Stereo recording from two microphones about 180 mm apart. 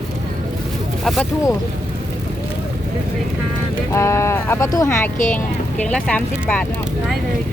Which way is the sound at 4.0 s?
15° left (ahead or behind).